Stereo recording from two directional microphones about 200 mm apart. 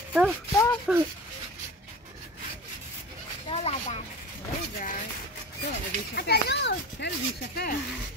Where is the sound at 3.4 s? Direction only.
30° left (ahead or behind).